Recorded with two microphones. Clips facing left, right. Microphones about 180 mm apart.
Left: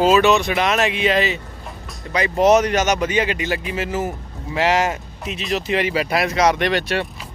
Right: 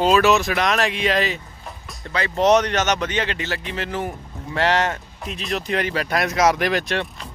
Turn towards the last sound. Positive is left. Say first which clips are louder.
# left 2 dB
turn(degrees=0)  # may be behind; listen again after turning